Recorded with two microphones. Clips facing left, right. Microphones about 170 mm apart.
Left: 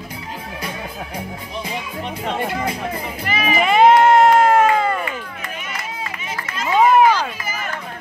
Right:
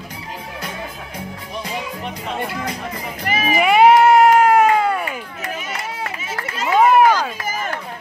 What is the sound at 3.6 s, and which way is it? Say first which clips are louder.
Cat: right 1 dB; 10° right (ahead or behind).